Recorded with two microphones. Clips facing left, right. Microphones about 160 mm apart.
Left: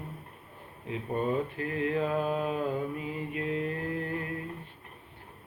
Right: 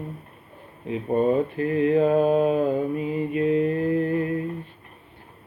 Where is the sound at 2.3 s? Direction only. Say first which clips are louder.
Right 10 dB; 30° right (ahead or behind).